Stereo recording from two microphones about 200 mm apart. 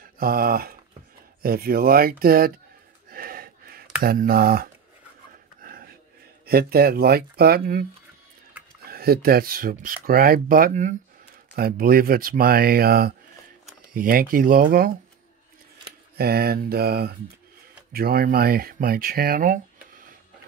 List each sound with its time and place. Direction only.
0.0 s speech: 45° right (ahead or behind)
3.1 s a sound: 45° right (ahead or behind)
4.0 s speech: 50° right (ahead or behind)
5.6 s a sound: 45° right (ahead or behind)
6.4 s speech: 50° right (ahead or behind)
8.8 s speech: 50° right (ahead or behind)
16.2 s speech: 50° right (ahead or behind)